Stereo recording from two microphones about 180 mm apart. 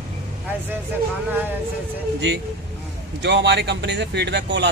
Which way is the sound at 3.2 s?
75° right (ahead or behind).